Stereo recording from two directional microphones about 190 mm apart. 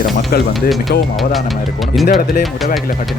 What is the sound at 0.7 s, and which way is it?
Speech, centre (ahead or behind).